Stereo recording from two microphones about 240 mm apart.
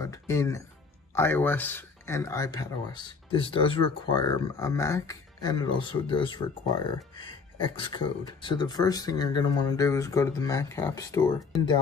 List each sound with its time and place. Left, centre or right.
0.0 s speech: centre